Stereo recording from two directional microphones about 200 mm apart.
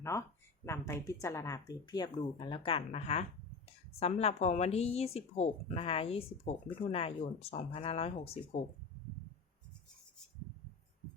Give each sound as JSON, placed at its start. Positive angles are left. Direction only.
{"t": 0.6, "sound": "speech", "side_deg": 15}